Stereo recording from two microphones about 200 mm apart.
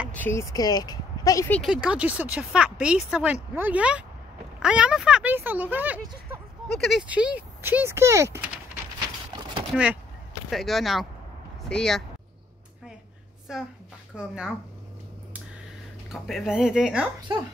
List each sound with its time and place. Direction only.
0.1 s speech: 10° left (ahead or behind)
1.6 s speech: 5° right (ahead or behind)
10.5 s speech: centre (ahead or behind)
13.5 s speech: centre (ahead or behind)
16.1 s speech: centre (ahead or behind)